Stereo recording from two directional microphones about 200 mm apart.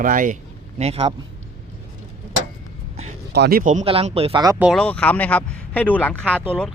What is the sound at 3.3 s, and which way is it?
Speech, 50° right (ahead or behind).